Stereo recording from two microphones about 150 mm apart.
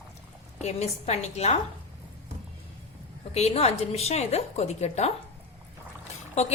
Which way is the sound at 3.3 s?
45° left (ahead or behind).